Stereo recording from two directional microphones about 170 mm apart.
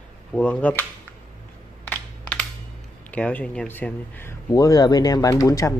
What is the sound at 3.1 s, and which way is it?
Speech, 10° left (ahead or behind).